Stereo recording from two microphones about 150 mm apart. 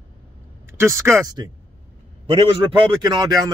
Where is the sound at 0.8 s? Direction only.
20° right (ahead or behind).